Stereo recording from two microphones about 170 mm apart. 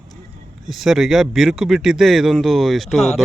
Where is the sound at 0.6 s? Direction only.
Centre (ahead or behind).